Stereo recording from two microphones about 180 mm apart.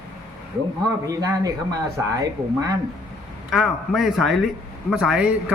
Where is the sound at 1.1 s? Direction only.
20° right (ahead or behind).